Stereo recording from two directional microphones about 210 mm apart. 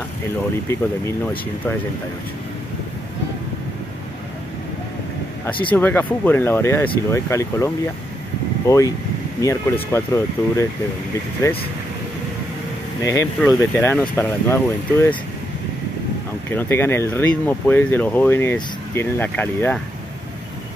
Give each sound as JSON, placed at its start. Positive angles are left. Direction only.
{"t": 5.7, "sound": "speech", "side_deg": 10}
{"t": 13.0, "sound": "speech", "side_deg": 15}
{"t": 16.4, "sound": "speech", "side_deg": 10}